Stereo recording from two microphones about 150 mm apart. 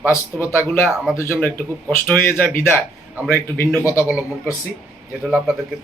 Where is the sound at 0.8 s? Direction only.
5° right (ahead or behind).